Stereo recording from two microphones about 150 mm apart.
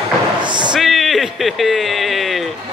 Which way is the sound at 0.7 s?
Centre (ahead or behind).